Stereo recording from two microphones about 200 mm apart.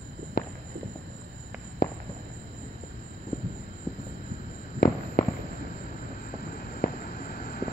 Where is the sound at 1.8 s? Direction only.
50° left (ahead or behind).